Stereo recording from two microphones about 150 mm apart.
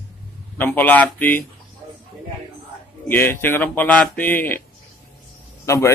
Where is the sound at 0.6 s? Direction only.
10° left (ahead or behind).